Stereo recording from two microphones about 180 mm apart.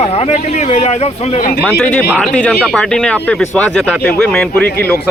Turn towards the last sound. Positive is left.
turn(degrees=5)  # may be behind; listen again after turning